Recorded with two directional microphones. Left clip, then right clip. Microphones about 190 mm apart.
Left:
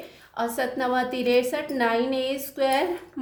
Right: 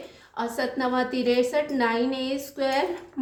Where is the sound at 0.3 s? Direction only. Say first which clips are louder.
Left 1 dB; 25° left (ahead or behind).